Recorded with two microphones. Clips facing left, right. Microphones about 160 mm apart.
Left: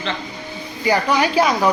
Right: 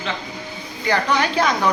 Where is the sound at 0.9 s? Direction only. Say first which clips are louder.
Left 2 dB; 10° left (ahead or behind).